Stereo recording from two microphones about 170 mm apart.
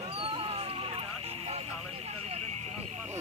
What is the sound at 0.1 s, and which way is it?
Cat, 35° right (ahead or behind).